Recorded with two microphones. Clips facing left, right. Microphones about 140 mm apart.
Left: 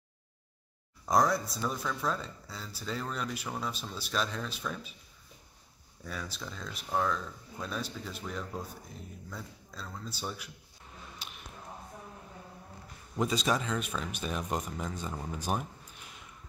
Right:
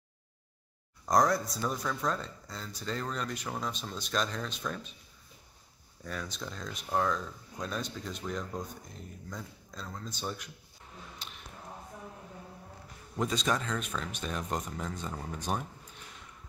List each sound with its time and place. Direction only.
1.0 s speech: centre (ahead or behind)
6.0 s speech: 5° left (ahead or behind)
13.1 s speech: 5° left (ahead or behind)